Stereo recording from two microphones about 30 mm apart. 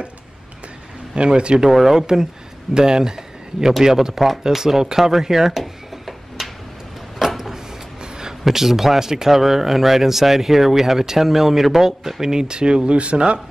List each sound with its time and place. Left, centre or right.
1.1 s speech: right
1.7 s speech: centre
2.7 s speech: right; by 6.5 s centre
7.2 s a sound: centre
8.5 s speech: centre; by 13.4 s right